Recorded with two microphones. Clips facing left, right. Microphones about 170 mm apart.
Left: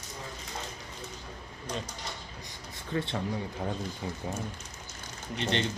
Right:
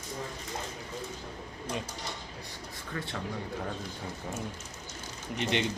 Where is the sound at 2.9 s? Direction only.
25° left (ahead or behind).